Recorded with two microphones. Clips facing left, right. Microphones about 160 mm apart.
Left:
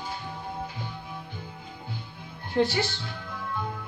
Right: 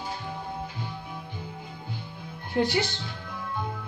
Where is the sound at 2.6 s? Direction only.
15° right (ahead or behind).